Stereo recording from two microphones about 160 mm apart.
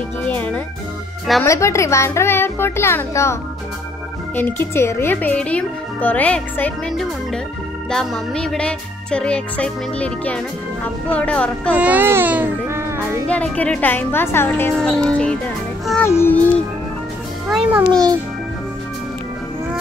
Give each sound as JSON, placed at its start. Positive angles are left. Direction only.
{"t": 0.3, "sound": "a child's voice", "side_deg": 10}
{"t": 4.4, "sound": "a child's voice", "side_deg": 15}
{"t": 11.7, "sound": "a child's voice", "side_deg": -10}
{"t": 13.3, "sound": "a child's voice", "side_deg": 10}
{"t": 17.5, "sound": "a child's voice", "side_deg": 0}